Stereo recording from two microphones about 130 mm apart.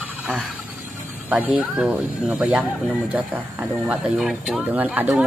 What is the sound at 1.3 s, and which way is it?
A woman's voice, 10° right (ahead or behind).